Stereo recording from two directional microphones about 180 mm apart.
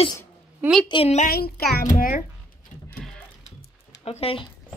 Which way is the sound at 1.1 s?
50° left (ahead or behind).